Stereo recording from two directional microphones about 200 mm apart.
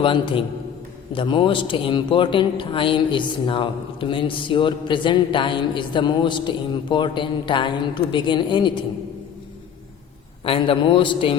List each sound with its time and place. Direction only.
0.0 s a man's voice: 25° left (ahead or behind)
10.4 s a man's voice: 25° left (ahead or behind)